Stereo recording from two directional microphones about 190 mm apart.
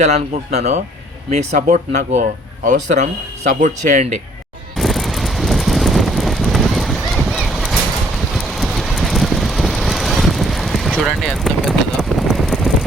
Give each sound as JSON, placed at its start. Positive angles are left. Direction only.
{"t": 0.0, "sound": "a man's voice", "side_deg": -35}
{"t": 4.8, "sound": "vehicle", "side_deg": 0}